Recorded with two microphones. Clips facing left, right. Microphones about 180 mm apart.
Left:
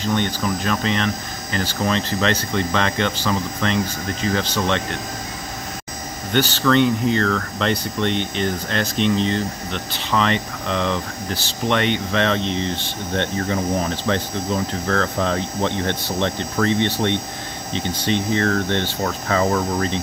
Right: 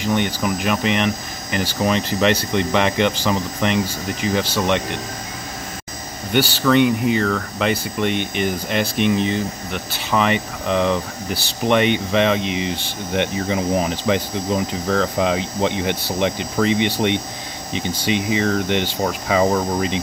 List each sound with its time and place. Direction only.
0.0 s speech: 15° right (ahead or behind)
6.3 s speech: 10° right (ahead or behind)